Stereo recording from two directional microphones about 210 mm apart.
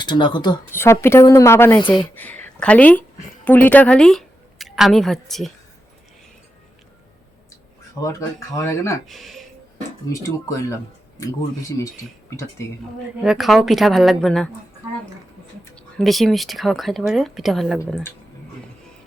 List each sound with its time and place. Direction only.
0.0 s a woman's voice: 20° left (ahead or behind); by 5.5 s centre (ahead or behind)
8.0 s a woman's voice: 15° left (ahead or behind)
9.0 s speech: centre (ahead or behind)
10.1 s a woman's voice: 15° left (ahead or behind)
13.2 s speech: centre (ahead or behind)
15.6 s speech: 5° left (ahead or behind)